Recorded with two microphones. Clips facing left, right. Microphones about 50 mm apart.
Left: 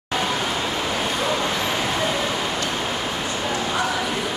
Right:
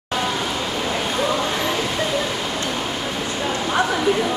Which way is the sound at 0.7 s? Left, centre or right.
Centre.